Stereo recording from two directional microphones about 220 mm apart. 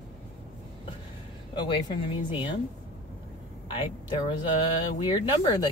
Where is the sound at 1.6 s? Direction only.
20° left (ahead or behind).